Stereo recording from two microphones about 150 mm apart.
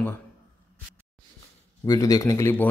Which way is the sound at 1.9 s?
25° left (ahead or behind).